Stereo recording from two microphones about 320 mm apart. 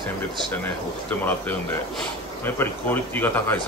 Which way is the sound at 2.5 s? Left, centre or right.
Centre.